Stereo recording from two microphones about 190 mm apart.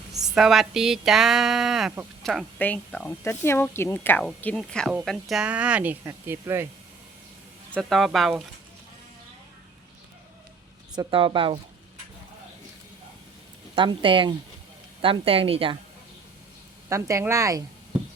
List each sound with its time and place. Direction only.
0.3 s speech: 5° right (ahead or behind)
7.8 s speech: centre (ahead or behind)
10.9 s a woman's voice: 25° right (ahead or behind)
13.7 s a woman's voice: 25° right (ahead or behind)
16.9 s speech: 15° right (ahead or behind)